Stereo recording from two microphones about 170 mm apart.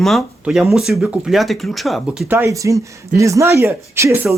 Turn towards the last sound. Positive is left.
turn(degrees=-15)  # may be behind; listen again after turning